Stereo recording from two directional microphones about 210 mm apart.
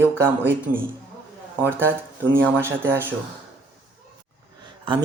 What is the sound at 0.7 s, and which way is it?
Speech, 90° right.